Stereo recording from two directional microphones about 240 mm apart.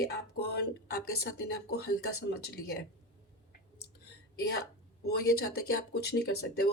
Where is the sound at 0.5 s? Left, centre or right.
Left.